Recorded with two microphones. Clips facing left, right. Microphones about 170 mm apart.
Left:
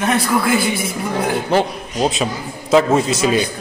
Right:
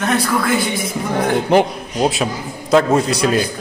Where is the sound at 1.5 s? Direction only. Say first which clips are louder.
Right 3 dB; 15° right (ahead or behind).